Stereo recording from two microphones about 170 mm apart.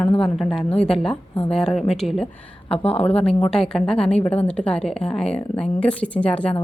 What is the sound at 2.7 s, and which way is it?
Speech, 35° left (ahead or behind).